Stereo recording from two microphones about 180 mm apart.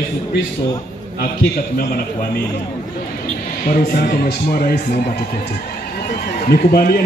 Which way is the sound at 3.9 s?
55° left (ahead or behind).